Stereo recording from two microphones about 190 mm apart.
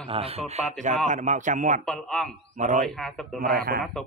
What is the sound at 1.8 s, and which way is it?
Speech, 5° left (ahead or behind).